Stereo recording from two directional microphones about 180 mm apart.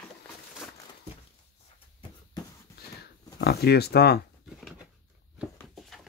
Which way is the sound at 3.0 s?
65° left (ahead or behind).